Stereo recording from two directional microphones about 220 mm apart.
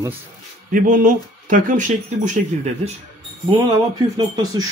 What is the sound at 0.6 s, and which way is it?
Speech, 40° right (ahead or behind).